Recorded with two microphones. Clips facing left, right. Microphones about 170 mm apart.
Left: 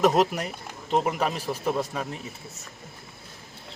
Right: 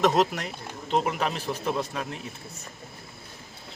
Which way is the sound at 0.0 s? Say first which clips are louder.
Left 1 dB; 10° left (ahead or behind).